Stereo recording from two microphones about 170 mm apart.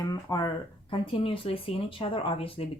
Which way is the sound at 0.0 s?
20° left (ahead or behind).